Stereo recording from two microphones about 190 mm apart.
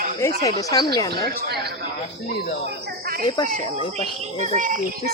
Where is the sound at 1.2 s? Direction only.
60° right (ahead or behind).